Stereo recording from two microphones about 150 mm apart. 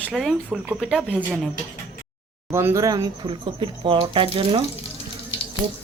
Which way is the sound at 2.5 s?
20° right (ahead or behind).